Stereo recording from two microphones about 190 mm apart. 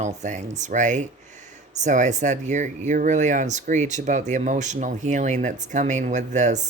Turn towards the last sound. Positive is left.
turn(degrees=-40)  # may be behind; listen again after turning